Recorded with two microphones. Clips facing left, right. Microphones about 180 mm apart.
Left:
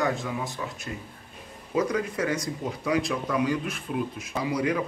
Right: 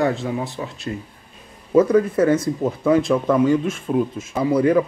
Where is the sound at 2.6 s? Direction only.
50° right (ahead or behind).